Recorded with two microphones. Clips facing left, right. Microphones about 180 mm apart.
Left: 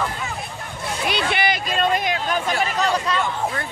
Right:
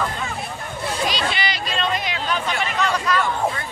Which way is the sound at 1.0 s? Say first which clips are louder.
Left 4 dB; 60° left (ahead or behind).